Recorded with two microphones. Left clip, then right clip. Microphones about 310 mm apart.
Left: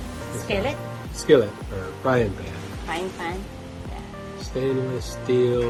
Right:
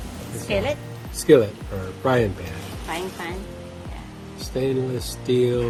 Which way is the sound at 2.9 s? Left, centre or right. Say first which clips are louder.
Left 1 dB; centre.